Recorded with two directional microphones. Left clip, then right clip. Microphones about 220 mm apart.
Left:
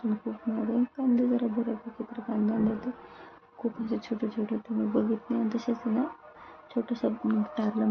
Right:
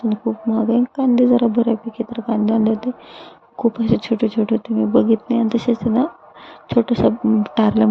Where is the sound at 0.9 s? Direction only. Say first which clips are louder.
Right 13 dB; 35° right (ahead or behind).